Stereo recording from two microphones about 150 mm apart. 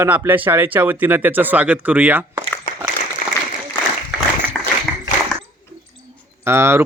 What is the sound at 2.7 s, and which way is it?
Applause, 65° left (ahead or behind).